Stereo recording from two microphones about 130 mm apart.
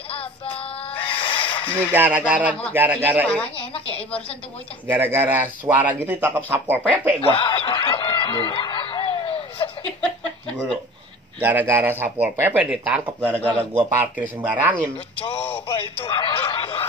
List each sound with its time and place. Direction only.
0.1 s synthetic singing: 45° left (ahead or behind)
1.9 s speech: 15° right (ahead or behind)
4.8 s speech: 15° right (ahead or behind)
7.2 s snicker: 45° left (ahead or behind)
11.4 s speech: 15° right (ahead or behind)
13.3 s speech: 10° left (ahead or behind)
13.6 s speech: 15° right (ahead or behind)
15.7 s speech: 40° left (ahead or behind)